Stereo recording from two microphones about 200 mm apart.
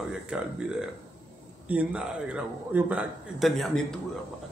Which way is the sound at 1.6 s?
5° right (ahead or behind).